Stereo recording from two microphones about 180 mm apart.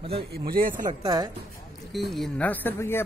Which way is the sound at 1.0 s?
20° right (ahead or behind).